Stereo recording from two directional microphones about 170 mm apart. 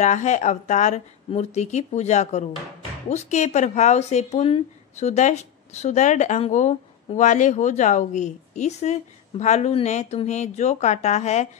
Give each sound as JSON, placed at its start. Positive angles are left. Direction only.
{"t": 0.0, "sound": "a woman's voice", "side_deg": 45}